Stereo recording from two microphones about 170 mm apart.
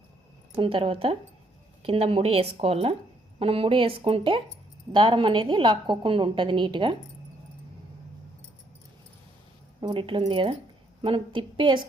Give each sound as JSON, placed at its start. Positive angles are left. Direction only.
{"t": 0.5, "sound": "a woman's voice", "side_deg": -30}
{"t": 9.8, "sound": "a woman's voice", "side_deg": -30}